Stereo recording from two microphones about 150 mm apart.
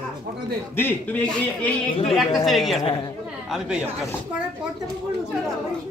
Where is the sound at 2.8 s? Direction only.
30° left (ahead or behind).